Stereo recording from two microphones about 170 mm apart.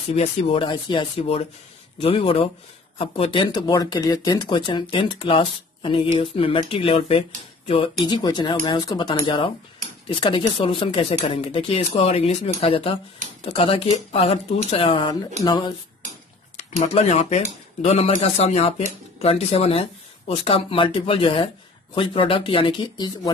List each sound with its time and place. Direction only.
0.1 s speech: 40° left (ahead or behind)
16.8 s speech: 40° left (ahead or behind); by 23.3 s 25° left (ahead or behind)